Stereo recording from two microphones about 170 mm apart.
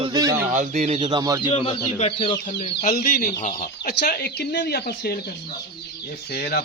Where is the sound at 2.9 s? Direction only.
60° left (ahead or behind).